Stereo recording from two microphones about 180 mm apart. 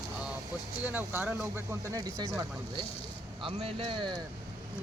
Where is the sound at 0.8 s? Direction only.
10° right (ahead or behind).